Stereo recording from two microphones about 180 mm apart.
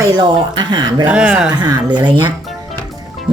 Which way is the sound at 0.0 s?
25° right (ahead or behind).